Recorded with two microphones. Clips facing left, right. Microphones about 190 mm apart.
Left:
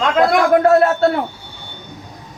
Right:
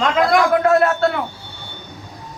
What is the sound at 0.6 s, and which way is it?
Speech, 35° left (ahead or behind).